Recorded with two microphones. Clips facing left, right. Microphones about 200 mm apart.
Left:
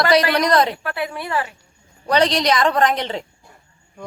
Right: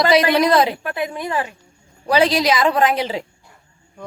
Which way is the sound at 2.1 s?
5° right (ahead or behind).